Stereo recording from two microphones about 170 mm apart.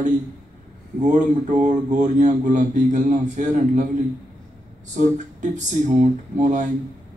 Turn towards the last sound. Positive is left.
turn(degrees=-45)  # may be behind; listen again after turning